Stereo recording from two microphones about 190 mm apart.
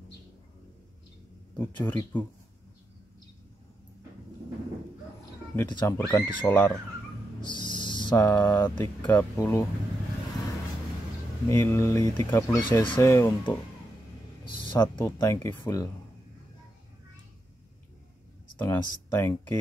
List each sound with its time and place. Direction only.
1.6 s speech: 10° left (ahead or behind)
5.6 s speech: 10° left (ahead or behind)
7.4 s music: 25° left (ahead or behind)
8.2 s speech: 10° left (ahead or behind)
11.4 s speech: 10° left (ahead or behind)
18.6 s speech: 15° left (ahead or behind)